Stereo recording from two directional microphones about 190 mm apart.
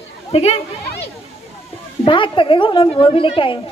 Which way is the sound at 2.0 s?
25° left (ahead or behind).